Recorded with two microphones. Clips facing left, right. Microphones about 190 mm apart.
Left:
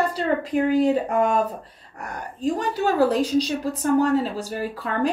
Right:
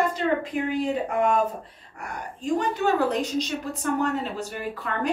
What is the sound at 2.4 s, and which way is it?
Speech, 35° left (ahead or behind).